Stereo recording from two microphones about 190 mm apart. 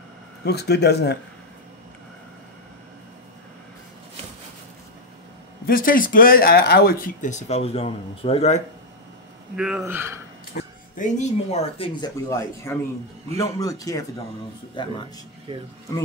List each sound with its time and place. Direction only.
0.5 s speech: 60° left (ahead or behind)
5.7 s speech: 45° left (ahead or behind)
9.6 s speech: 5° right (ahead or behind)
10.5 s a sound: 55° left (ahead or behind)
11.1 s speech: 35° left (ahead or behind)
12.3 s speech: 15° left (ahead or behind)
15.5 s speech: 25° right (ahead or behind)